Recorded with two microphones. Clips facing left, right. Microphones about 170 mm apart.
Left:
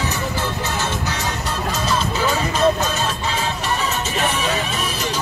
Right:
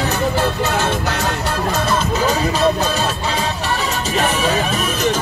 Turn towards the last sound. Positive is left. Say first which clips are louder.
# right 4 dB
turn(degrees=-40)  # may be behind; listen again after turning